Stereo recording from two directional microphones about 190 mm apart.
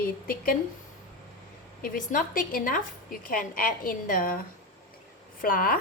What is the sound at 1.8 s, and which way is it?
A woman's voice, 45° left (ahead or behind).